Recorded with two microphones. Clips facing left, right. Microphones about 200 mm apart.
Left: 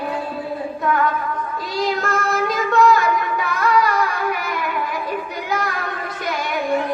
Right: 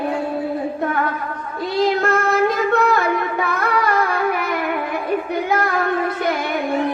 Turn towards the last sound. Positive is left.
turn(degrees=-55)  # may be behind; listen again after turning